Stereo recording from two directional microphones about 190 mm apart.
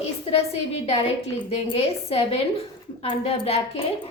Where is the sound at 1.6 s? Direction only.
30° left (ahead or behind).